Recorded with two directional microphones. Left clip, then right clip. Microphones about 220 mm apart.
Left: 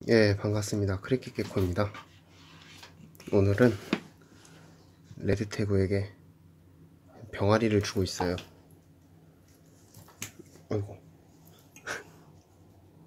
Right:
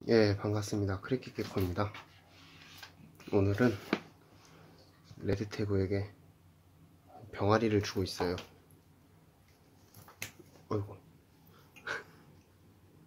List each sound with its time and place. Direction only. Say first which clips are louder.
0.0 s speech: left 4 dB; 10° left (ahead or behind)
3.2 s speech: left 6 dB; 15° left (ahead or behind)
5.2 s speech: left 5 dB; 15° left (ahead or behind)
7.2 s speech: left 3 dB; 10° left (ahead or behind)